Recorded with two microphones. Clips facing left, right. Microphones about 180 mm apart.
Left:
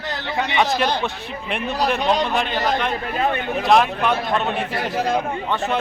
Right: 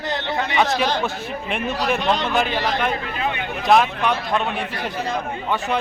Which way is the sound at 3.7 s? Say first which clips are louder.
Even; centre (ahead or behind).